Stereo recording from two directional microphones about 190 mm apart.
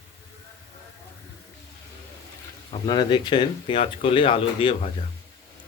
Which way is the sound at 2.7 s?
25° left (ahead or behind).